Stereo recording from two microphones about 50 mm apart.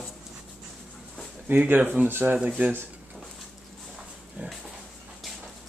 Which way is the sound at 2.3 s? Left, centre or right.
Centre.